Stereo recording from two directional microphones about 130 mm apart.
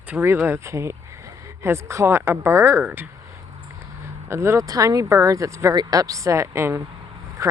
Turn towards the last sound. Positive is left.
turn(degrees=-25)  # may be behind; listen again after turning